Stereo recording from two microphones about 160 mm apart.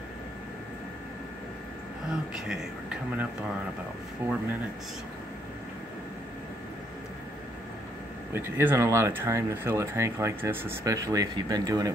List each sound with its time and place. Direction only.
2.3 s speech: 5° right (ahead or behind)
8.3 s speech: 15° right (ahead or behind)